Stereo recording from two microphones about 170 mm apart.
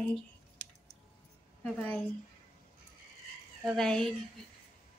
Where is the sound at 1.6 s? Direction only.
5° left (ahead or behind).